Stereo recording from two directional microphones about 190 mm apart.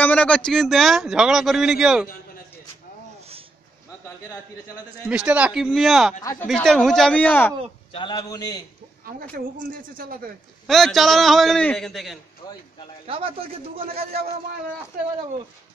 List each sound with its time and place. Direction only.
0.0 s a man's voice: 5° left (ahead or behind)
5.0 s a man's voice: 5° right (ahead or behind)
7.9 s a man's voice: 25° left (ahead or behind)
9.0 s a man's voice: 50° right (ahead or behind)
10.7 s a man's voice: centre (ahead or behind)
13.0 s speech: 30° right (ahead or behind)